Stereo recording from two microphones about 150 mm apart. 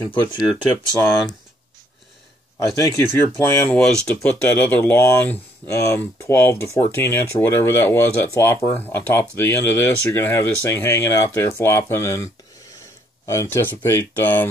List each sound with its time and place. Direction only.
0.1 s speech: 30° left (ahead or behind)
3.3 s speech: 15° left (ahead or behind)